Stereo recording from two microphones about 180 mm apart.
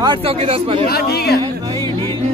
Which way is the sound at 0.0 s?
30° right (ahead or behind).